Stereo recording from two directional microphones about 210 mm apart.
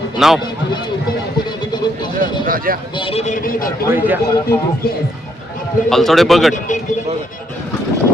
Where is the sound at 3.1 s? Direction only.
30° left (ahead or behind).